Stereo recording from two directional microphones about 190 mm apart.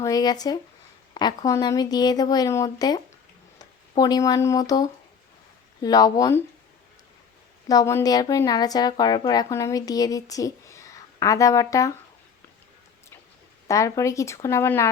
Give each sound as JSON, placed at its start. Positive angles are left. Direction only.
{"t": 0.0, "sound": "speech", "side_deg": 20}
{"t": 7.7, "sound": "speech", "side_deg": 15}
{"t": 13.7, "sound": "speech", "side_deg": 15}